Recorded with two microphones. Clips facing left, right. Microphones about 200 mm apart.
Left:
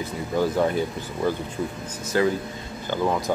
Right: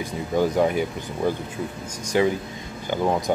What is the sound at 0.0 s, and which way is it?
Speech, 15° right (ahead or behind).